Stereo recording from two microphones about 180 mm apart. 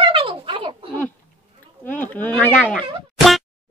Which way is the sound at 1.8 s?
10° left (ahead or behind).